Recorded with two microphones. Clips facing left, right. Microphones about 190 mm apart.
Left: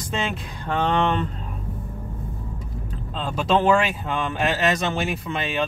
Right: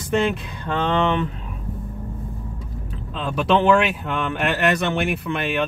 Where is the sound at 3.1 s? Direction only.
65° right (ahead or behind).